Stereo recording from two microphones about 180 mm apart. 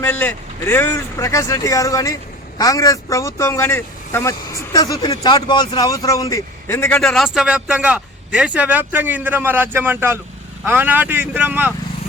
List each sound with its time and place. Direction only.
0.0 s speech: 10° left (ahead or behind)
7.0 s speech: centre (ahead or behind)